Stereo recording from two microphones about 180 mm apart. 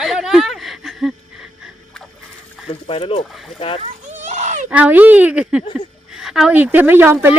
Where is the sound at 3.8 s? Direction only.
40° right (ahead or behind).